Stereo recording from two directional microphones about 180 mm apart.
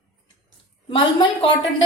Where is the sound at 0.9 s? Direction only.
25° left (ahead or behind).